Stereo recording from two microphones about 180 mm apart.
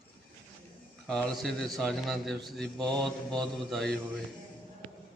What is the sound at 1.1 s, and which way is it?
A man's voice, 5° left (ahead or behind).